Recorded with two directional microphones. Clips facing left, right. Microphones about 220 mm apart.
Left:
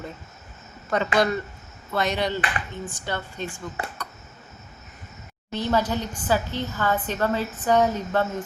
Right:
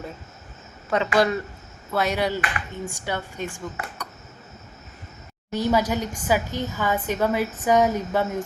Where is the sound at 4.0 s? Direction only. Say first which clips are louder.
Right 1 dB; 15° right (ahead or behind).